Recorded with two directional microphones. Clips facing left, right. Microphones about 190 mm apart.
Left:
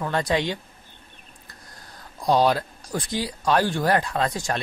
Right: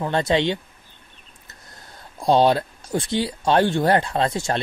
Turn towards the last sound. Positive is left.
turn(degrees=-25)  # may be behind; listen again after turning